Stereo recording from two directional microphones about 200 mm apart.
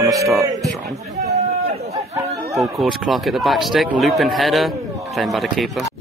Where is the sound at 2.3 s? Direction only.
Centre (ahead or behind).